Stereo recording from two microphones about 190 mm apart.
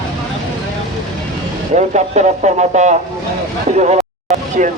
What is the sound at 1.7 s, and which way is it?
A man's voice, 35° right (ahead or behind).